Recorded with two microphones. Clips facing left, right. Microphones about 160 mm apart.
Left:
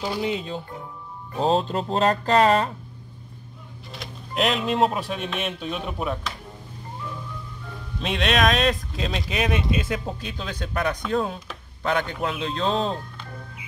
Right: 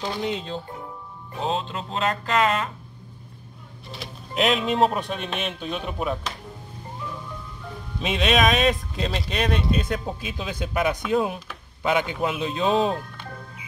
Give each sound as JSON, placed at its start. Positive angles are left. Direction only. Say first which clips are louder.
{"t": 0.0, "sound": "speech", "louder": "left 1 dB", "side_deg": 10}
{"t": 1.4, "sound": "speech", "louder": "left 5 dB", "side_deg": 40}
{"t": 3.9, "sound": "speech", "louder": "even", "side_deg": 0}
{"t": 8.0, "sound": "a man's voice", "louder": "right 1 dB", "side_deg": 0}